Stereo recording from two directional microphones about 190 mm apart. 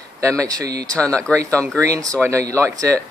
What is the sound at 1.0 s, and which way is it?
Speech, 5° left (ahead or behind).